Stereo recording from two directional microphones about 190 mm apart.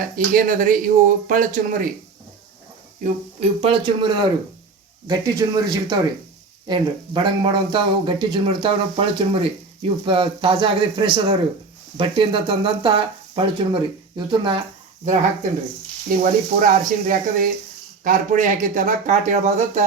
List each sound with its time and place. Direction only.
0.0 s speech: 45° right (ahead or behind)
3.0 s speech: 30° right (ahead or behind)
15.0 s speech: 40° right (ahead or behind)